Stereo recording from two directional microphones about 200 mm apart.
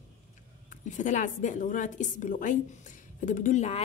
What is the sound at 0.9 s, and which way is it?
A woman's voice, 35° left (ahead or behind).